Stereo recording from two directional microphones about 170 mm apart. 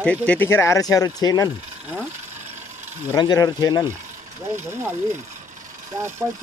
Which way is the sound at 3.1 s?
25° left (ahead or behind).